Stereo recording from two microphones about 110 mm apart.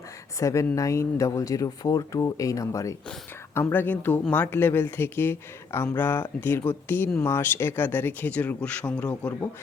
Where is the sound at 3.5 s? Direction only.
15° left (ahead or behind).